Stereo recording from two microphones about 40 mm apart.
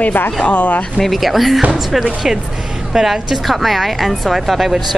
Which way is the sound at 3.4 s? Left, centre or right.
Centre.